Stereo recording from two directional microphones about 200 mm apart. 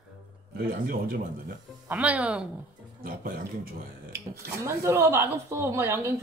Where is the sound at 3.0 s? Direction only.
45° right (ahead or behind).